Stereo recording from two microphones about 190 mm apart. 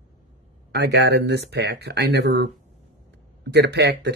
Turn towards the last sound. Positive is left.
turn(degrees=-60)  # may be behind; listen again after turning